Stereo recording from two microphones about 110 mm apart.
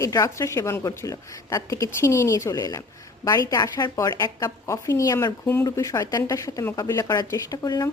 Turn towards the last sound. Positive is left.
turn(degrees=35)  # may be behind; listen again after turning